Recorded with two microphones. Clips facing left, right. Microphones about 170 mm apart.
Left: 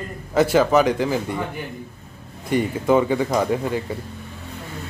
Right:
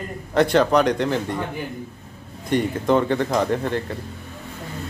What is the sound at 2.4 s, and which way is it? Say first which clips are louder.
Speech: left 1 dB; 5° left (ahead or behind).